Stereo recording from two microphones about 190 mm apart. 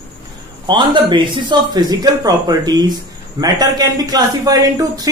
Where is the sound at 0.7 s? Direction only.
25° right (ahead or behind).